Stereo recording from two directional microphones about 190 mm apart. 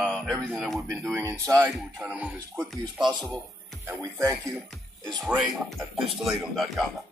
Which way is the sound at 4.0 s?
15° right (ahead or behind).